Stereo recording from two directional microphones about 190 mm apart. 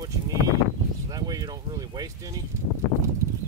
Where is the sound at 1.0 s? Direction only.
20° right (ahead or behind).